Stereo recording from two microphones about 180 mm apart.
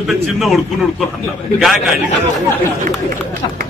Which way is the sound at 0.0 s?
Centre (ahead or behind).